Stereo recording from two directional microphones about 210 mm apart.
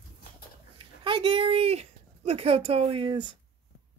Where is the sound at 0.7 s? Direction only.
25° right (ahead or behind).